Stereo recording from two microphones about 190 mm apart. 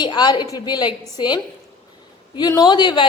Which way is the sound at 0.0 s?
20° left (ahead or behind).